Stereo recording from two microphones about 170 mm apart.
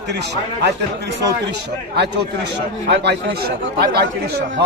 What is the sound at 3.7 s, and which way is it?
Speech, 75° right (ahead or behind).